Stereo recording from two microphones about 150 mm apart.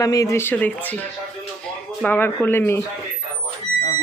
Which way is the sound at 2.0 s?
15° left (ahead or behind).